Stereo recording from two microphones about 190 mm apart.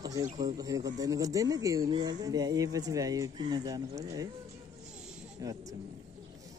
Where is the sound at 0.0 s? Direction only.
20° right (ahead or behind).